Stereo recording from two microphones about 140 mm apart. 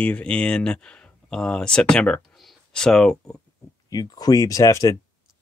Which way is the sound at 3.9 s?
25° left (ahead or behind).